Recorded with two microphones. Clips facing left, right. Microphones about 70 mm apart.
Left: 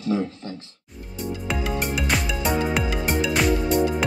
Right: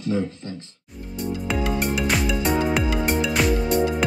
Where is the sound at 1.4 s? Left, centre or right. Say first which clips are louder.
Right 2 dB; centre.